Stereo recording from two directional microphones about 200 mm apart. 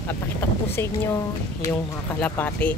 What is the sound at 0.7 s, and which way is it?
Speech, 15° left (ahead or behind).